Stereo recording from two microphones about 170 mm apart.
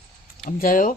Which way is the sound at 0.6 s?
55° left (ahead or behind).